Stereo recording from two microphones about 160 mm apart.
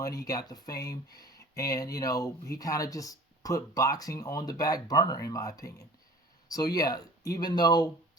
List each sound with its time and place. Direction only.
0.0 s speech: 20° left (ahead or behind)